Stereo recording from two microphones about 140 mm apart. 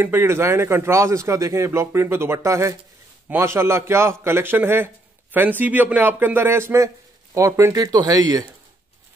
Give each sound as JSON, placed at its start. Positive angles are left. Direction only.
{"t": 0.0, "sound": "a man's voice", "side_deg": -15}